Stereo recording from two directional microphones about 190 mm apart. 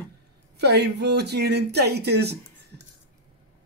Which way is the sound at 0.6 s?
60° right (ahead or behind).